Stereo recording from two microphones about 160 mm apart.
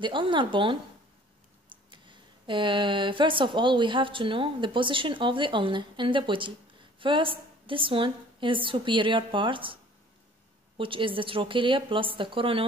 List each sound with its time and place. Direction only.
0.0 s speech: 30° right (ahead or behind)
10.8 s speech: 35° right (ahead or behind)